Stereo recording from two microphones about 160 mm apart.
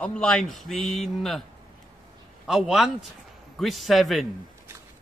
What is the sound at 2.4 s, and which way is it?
A man's voice, centre (ahead or behind).